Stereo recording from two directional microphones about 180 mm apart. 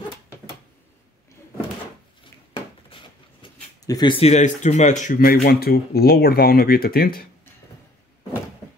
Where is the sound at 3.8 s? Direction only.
20° left (ahead or behind); by 7.2 s 55° left (ahead or behind).